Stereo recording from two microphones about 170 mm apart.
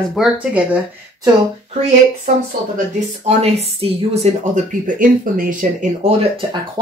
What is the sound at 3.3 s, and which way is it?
Speech, 40° right (ahead or behind).